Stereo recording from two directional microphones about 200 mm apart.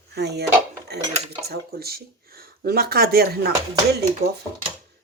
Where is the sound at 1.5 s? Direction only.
50° right (ahead or behind).